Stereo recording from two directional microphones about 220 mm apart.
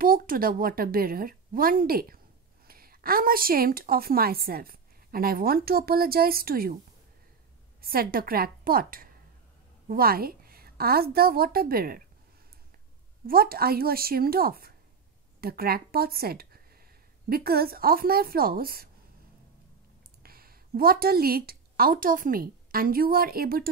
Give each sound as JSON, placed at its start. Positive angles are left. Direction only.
{"t": 0.0, "sound": "a woman's voice", "side_deg": -40}
{"t": 7.8, "sound": "a woman's voice", "side_deg": -40}
{"t": 13.3, "sound": "speech", "side_deg": -40}
{"t": 20.2, "sound": "a woman's voice", "side_deg": -40}